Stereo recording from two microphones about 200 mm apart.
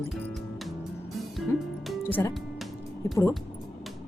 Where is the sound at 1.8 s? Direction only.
10° left (ahead or behind).